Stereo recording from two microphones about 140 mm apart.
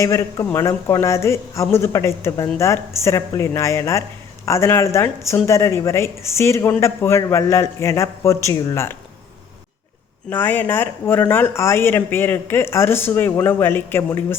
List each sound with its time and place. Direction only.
0.0 s speech: 20° left (ahead or behind)
10.2 s speech: 15° left (ahead or behind)